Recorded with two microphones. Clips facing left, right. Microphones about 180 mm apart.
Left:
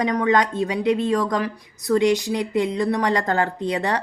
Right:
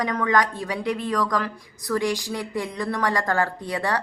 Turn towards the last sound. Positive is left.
turn(degrees=20)  # may be behind; listen again after turning